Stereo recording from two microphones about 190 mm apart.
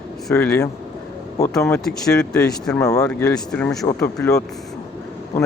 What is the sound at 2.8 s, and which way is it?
Speech, 20° left (ahead or behind).